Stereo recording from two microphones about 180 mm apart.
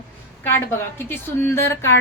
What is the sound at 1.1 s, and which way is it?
Speech, 15° left (ahead or behind).